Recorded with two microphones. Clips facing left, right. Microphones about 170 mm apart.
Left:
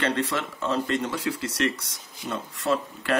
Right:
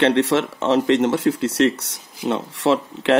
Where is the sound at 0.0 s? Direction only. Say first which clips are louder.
Right 10 dB; 70° right (ahead or behind).